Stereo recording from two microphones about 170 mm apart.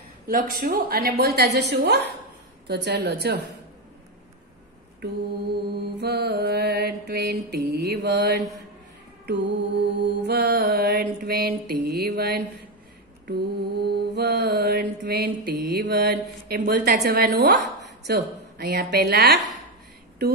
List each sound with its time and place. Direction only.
0.3 s mantra: 55° right (ahead or behind); by 3.5 s 75° right (ahead or behind)
5.9 s mantra: 70° right (ahead or behind)
18.0 s speech: 65° right (ahead or behind)